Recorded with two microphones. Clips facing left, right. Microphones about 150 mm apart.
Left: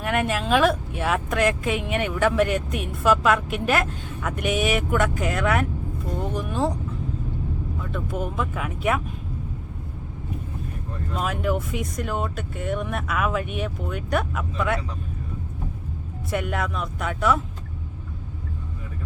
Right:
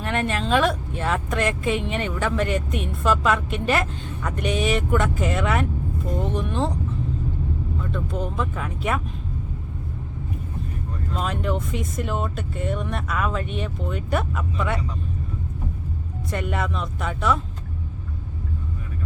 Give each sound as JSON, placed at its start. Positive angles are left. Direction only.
{"t": 0.0, "sound": "speech", "side_deg": 5}
{"t": 7.8, "sound": "speech", "side_deg": 5}
{"t": 11.1, "sound": "speech", "side_deg": 5}
{"t": 16.3, "sound": "speech", "side_deg": 0}